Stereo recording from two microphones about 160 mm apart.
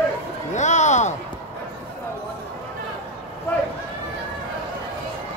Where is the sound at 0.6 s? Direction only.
45° left (ahead or behind).